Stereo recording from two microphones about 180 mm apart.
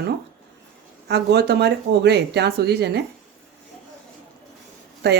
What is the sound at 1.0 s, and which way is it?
Speech, 70° right (ahead or behind).